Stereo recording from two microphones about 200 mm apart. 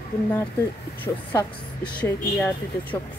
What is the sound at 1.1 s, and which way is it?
A woman's voice, 15° left (ahead or behind).